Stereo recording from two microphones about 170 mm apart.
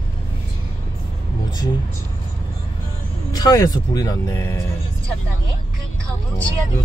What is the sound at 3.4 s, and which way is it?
Speech, 20° left (ahead or behind).